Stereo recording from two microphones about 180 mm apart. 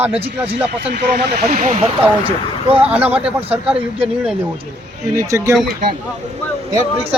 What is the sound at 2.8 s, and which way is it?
Speech, 5° right (ahead or behind).